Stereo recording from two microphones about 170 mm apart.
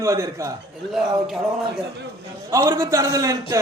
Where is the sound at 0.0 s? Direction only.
20° right (ahead or behind).